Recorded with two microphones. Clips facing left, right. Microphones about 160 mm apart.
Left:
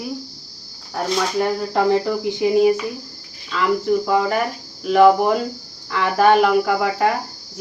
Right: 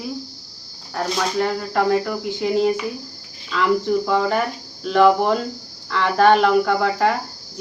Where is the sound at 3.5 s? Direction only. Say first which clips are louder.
Even; centre (ahead or behind).